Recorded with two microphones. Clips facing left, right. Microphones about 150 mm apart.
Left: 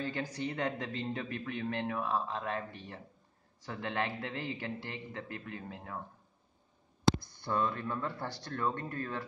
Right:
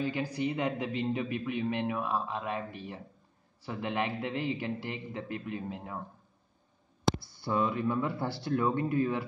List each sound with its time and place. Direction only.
0.0 s a man's voice: 10° right (ahead or behind)
7.2 s a man's voice: 5° right (ahead or behind)